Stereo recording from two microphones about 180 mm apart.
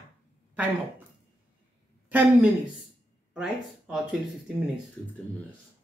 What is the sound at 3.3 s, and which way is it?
Speech, 5° right (ahead or behind).